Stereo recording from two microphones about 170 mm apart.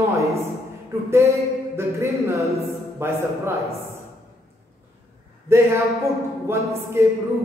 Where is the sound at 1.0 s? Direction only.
15° right (ahead or behind).